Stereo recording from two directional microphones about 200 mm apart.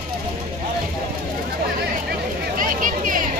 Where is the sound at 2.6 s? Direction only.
45° right (ahead or behind).